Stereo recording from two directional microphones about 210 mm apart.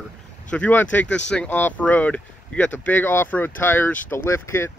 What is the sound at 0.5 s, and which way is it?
Speech, 5° left (ahead or behind).